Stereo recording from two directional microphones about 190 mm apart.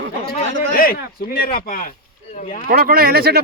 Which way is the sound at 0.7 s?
50° left (ahead or behind).